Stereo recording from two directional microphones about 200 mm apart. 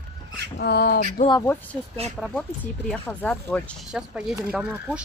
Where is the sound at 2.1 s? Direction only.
Centre (ahead or behind).